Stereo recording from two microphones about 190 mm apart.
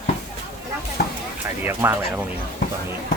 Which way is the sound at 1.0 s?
50° left (ahead or behind).